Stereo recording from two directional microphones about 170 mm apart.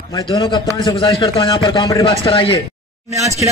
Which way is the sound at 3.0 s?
40° right (ahead or behind).